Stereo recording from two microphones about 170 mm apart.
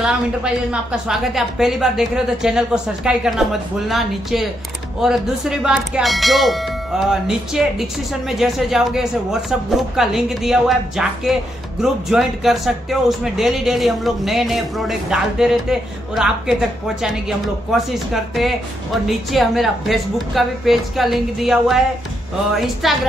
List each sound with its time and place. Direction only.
0.0 s speech: 5° right (ahead or behind)